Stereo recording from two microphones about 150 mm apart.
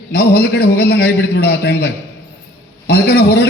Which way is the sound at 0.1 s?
90° left.